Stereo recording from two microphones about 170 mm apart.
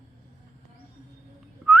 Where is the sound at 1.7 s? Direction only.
Centre (ahead or behind).